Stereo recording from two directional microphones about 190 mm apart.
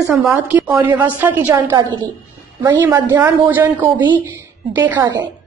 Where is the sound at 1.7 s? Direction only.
20° right (ahead or behind).